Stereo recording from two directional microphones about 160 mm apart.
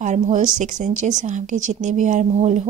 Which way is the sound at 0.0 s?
50° right (ahead or behind).